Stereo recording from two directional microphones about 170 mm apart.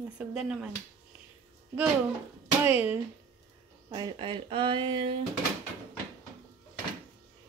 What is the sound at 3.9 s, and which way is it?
Speech, 25° right (ahead or behind).